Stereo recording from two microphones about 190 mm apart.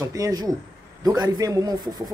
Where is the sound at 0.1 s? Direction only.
20° right (ahead or behind).